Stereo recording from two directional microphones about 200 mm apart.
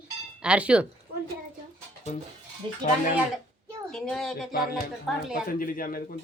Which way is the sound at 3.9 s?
5° left (ahead or behind).